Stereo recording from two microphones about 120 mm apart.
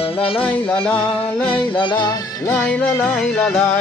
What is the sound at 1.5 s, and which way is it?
Music, 45° left (ahead or behind).